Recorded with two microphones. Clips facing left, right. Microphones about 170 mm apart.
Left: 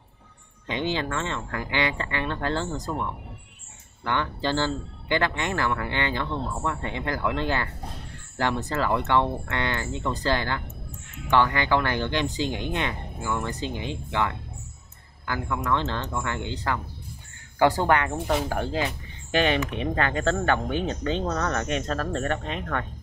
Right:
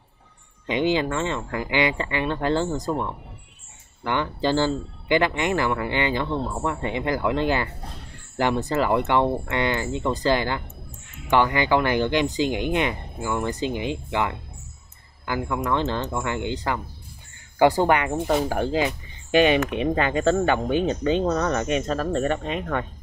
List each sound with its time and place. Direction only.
0.7 s speech: 15° right (ahead or behind)
4.0 s speech: 15° right (ahead or behind)